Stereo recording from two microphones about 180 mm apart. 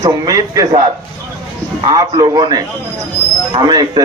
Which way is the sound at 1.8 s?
20° right (ahead or behind).